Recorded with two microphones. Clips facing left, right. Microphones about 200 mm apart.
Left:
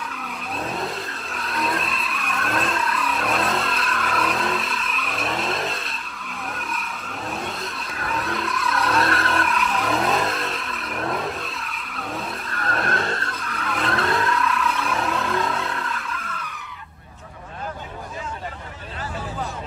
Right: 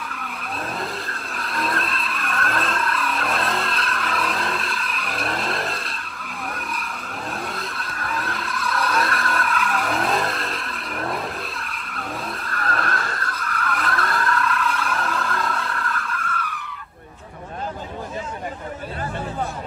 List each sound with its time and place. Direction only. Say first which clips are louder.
1.3 s vehicle: left 1 dB; centre (ahead or behind)
9.1 s vehicle: left 2 dB; 25° left (ahead or behind)
9.5 s vehicle: left 1 dB; centre (ahead or behind)
12.6 s vehicle: left 2 dB; 25° left (ahead or behind)
14.3 s vehicle: even; centre (ahead or behind)